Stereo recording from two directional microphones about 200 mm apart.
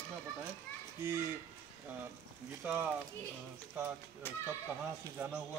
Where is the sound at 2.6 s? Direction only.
10° right (ahead or behind).